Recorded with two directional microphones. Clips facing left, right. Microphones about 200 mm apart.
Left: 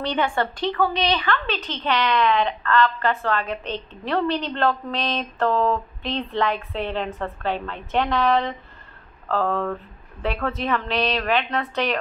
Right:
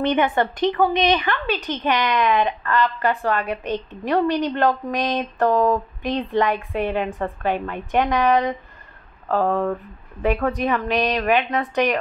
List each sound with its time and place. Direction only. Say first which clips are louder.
0.0 s a woman's voice: right 4 dB; 20° right (ahead or behind)